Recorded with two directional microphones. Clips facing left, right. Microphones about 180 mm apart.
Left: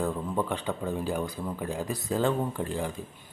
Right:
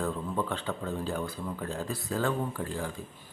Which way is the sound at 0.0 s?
15° left (ahead or behind).